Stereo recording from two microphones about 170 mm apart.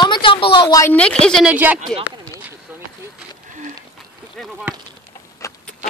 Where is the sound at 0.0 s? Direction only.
30° left (ahead or behind).